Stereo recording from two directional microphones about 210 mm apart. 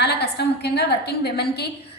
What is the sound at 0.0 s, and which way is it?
A woman's voice, 50° left (ahead or behind).